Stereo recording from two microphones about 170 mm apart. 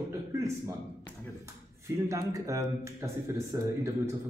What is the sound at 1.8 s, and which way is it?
A man's voice, 20° right (ahead or behind).